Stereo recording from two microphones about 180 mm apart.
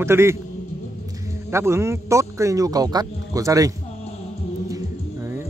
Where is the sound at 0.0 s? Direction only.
15° right (ahead or behind).